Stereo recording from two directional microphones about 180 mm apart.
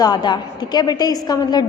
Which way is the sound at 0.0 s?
25° left (ahead or behind).